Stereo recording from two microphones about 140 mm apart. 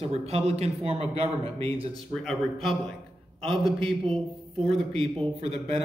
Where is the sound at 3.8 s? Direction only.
40° right (ahead or behind).